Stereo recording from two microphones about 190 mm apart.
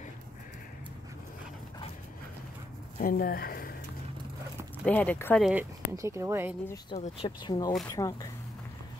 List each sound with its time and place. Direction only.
3.0 s speech: 50° left (ahead or behind)
4.8 s speech: 5° left (ahead or behind)
5.4 s speech: 10° right (ahead or behind)
7.0 s speech: 30° left (ahead or behind)